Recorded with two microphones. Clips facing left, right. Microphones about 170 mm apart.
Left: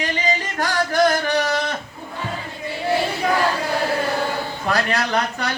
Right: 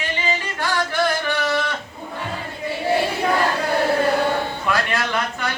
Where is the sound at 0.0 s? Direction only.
40° left (ahead or behind).